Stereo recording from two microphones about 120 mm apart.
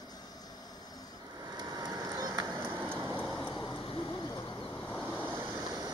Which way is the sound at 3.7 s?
35° left (ahead or behind).